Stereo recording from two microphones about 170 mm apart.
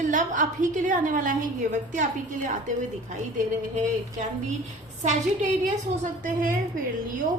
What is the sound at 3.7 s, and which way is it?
A woman's voice, 45° right (ahead or behind).